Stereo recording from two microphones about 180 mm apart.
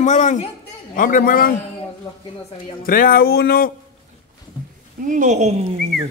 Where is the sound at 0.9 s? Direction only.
50° left (ahead or behind).